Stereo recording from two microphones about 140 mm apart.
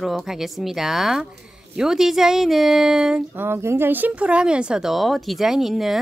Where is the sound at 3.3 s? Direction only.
15° right (ahead or behind).